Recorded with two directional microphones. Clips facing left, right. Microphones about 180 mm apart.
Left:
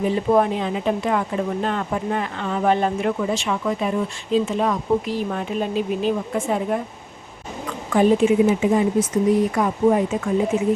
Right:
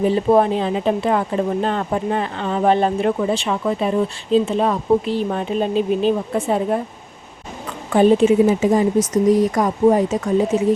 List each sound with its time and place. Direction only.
0.0 s speech: 30° right (ahead or behind)
7.9 s speech: 30° right (ahead or behind)